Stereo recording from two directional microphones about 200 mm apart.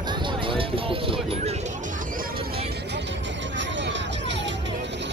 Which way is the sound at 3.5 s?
60° right (ahead or behind).